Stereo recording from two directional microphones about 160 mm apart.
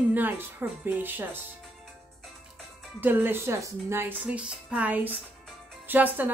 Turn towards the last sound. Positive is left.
turn(degrees=-10)  # may be behind; listen again after turning